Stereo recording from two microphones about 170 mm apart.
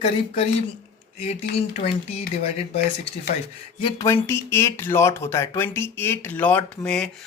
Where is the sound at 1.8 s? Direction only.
40° left (ahead or behind).